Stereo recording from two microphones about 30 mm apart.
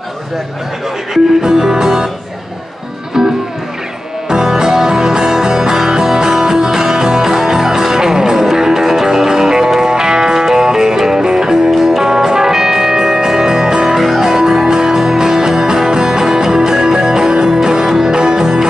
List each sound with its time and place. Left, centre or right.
1.1 s music: centre
3.2 s music: centre